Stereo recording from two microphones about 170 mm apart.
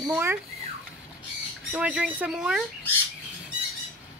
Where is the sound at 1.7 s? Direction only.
5° right (ahead or behind).